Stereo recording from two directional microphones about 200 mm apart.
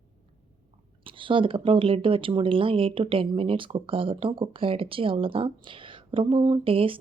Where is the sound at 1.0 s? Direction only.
25° right (ahead or behind).